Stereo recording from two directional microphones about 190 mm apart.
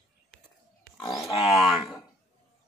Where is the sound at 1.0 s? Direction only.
Centre (ahead or behind).